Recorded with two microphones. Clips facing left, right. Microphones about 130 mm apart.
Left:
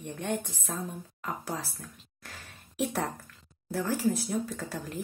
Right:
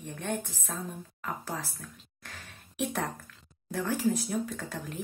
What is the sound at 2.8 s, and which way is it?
Speech, 10° left (ahead or behind).